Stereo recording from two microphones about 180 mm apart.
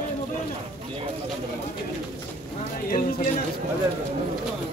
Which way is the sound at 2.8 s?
55° left (ahead or behind).